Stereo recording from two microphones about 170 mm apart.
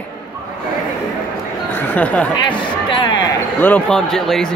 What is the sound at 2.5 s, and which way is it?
Speech, 25° left (ahead or behind).